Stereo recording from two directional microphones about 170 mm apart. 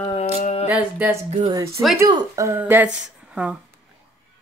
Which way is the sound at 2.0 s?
20° right (ahead or behind).